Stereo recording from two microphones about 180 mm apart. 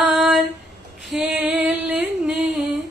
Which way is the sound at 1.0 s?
Centre (ahead or behind).